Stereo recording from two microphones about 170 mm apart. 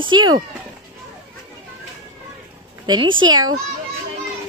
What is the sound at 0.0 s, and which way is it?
Speech, 25° right (ahead or behind).